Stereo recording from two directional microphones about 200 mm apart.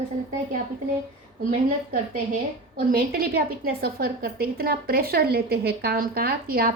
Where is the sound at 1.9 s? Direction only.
45° right (ahead or behind).